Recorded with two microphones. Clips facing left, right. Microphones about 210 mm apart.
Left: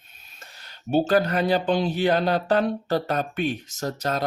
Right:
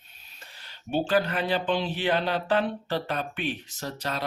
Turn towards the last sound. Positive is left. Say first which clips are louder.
# left 6 dB
turn(degrees=45)  # may be behind; listen again after turning